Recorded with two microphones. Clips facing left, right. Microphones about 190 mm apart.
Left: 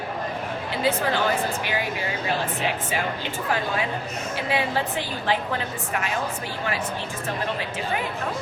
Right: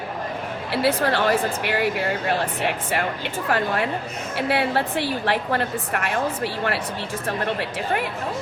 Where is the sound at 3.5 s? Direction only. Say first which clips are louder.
Right 3 dB; 60° right (ahead or behind).